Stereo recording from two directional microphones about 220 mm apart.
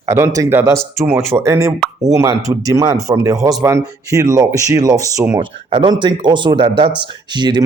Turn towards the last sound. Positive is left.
turn(degrees=-20)  # may be behind; listen again after turning